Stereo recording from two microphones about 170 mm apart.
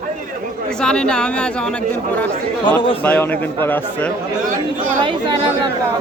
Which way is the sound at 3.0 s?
10° left (ahead or behind).